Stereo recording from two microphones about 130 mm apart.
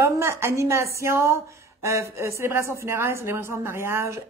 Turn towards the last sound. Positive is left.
turn(degrees=-20)  # may be behind; listen again after turning